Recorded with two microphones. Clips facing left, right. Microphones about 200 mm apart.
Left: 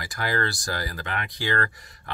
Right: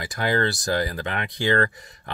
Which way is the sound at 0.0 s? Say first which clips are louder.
Right 5 dB; 25° right (ahead or behind).